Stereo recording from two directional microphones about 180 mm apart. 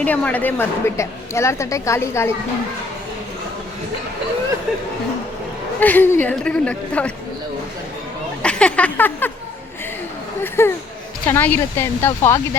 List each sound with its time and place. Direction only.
0.0 s a woman's voice: 10° left (ahead or behind)
5.8 s a woman's voice: 10° left (ahead or behind)
8.4 s a sound: 5° left (ahead or behind)
10.6 s a woman's voice: 15° left (ahead or behind)